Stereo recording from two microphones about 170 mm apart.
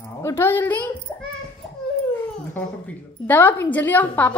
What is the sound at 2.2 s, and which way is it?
Speech, 10° left (ahead or behind).